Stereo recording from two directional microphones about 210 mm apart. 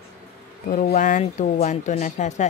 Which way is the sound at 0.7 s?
45° left (ahead or behind).